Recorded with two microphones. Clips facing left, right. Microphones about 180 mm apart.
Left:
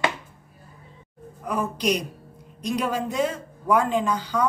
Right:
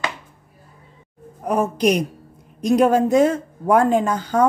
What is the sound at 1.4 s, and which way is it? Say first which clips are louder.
Speech: right 7 dB; 45° right (ahead or behind).